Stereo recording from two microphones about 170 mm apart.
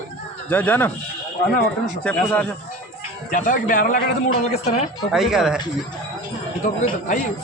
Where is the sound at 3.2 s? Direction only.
50° left (ahead or behind).